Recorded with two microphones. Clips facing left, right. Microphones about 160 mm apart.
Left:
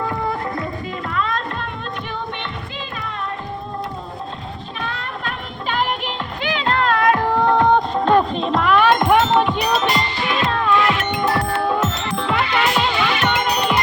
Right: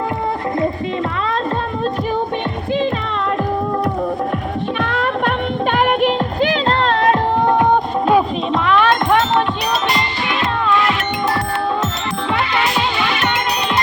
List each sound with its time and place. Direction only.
4.8 s music: 85° right
5.7 s music: 50° right (ahead or behind); by 7.2 s 30° right (ahead or behind)
7.4 s music: 15° right (ahead or behind)
8.6 s music: 5° left (ahead or behind)